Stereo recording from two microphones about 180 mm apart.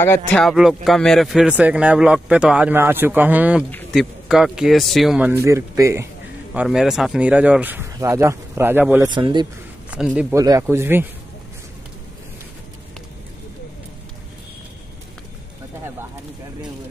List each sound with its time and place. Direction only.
0.0 s speech: 15° left (ahead or behind)
0.4 s a man's voice: centre (ahead or behind)
5.3 s a man's voice: 15° right (ahead or behind)
6.5 s a man's voice: 5° right (ahead or behind)
9.1 s speech: 25° right (ahead or behind)
9.8 s speech: 5° right (ahead or behind)
10.3 s a man's voice: 20° right (ahead or behind)